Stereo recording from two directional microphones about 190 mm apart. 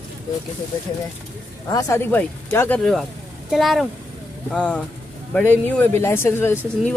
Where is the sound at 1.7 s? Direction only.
15° left (ahead or behind).